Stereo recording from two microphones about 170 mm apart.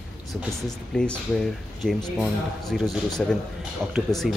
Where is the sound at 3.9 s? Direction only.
Centre (ahead or behind).